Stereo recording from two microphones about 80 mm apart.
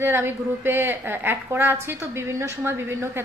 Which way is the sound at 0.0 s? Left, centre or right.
Right.